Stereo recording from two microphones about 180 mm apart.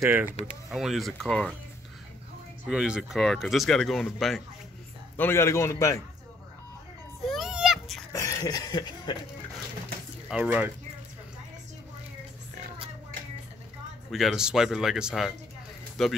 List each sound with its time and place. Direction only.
0.0 s speech: 10° right (ahead or behind)
0.7 s speech: centre (ahead or behind)
2.7 s speech: 5° right (ahead or behind)
5.1 s a man's voice: 10° left (ahead or behind)
7.2 s children playing: centre (ahead or behind)
8.1 s chuckle: 20° left (ahead or behind)
10.2 s speech: 5° right (ahead or behind)
14.1 s speech: 5° right (ahead or behind)